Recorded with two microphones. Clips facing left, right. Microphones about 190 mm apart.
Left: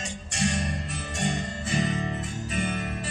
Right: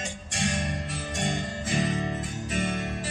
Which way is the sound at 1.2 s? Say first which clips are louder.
Left 2 dB; 50° right (ahead or behind).